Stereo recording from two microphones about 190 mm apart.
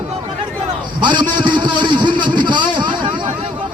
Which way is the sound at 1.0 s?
25° right (ahead or behind).